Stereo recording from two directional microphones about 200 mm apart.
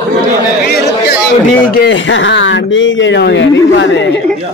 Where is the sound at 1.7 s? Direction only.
65° left (ahead or behind).